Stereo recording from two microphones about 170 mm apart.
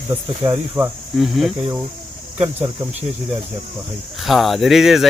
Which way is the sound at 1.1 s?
Centre (ahead or behind).